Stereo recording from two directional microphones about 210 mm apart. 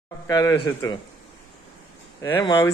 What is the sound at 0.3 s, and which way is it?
Speech, 15° left (ahead or behind).